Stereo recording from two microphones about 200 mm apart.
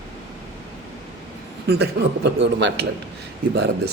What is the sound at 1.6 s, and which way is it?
A man's voice, 55° right (ahead or behind).